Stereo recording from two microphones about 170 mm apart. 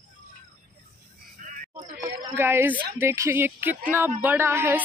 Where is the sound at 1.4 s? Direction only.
45° right (ahead or behind).